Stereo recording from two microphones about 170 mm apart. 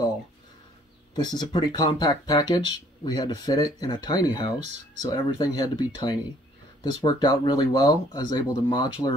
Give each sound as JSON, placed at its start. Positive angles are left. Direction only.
{"t": 1.1, "sound": "speech", "side_deg": 25}